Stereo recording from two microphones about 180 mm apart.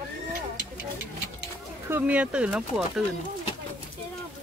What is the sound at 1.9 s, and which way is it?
Speech, 5° right (ahead or behind).